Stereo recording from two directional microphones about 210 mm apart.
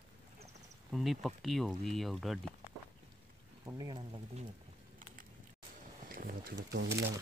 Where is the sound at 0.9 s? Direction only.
Centre (ahead or behind).